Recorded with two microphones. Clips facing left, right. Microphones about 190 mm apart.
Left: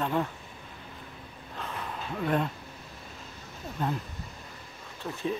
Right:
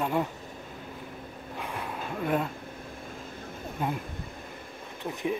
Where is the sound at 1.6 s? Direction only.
10° right (ahead or behind).